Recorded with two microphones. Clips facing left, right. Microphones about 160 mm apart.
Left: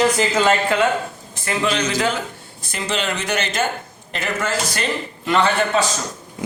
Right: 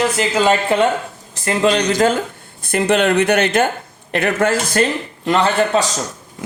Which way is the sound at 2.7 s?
55° right (ahead or behind).